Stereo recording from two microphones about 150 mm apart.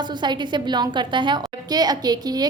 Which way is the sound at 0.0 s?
30° right (ahead or behind).